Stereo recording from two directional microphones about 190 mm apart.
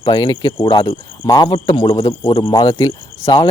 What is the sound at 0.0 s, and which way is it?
Speech, 25° left (ahead or behind).